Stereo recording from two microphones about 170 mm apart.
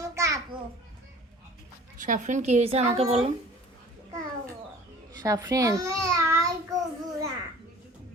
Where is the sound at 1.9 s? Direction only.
50° right (ahead or behind).